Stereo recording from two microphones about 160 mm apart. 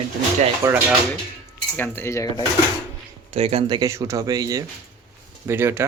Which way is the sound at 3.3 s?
40° right (ahead or behind).